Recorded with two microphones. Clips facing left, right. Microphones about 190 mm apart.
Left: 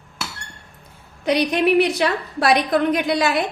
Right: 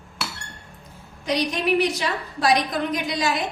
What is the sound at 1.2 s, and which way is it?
A woman's voice, 60° left (ahead or behind).